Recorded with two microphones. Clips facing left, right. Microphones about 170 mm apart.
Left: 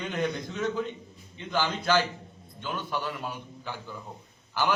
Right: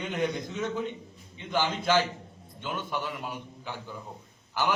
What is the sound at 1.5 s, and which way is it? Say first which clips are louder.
Speech: even; 20° right (ahead or behind).